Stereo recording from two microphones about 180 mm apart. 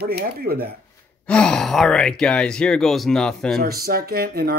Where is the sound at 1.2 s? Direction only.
5° left (ahead or behind).